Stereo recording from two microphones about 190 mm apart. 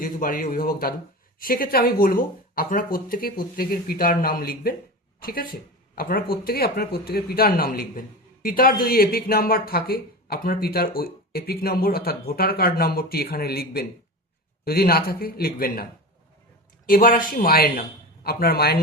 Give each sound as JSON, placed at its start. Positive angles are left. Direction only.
{"t": 0.0, "sound": "speech", "side_deg": 45}
{"t": 16.9, "sound": "speech", "side_deg": 50}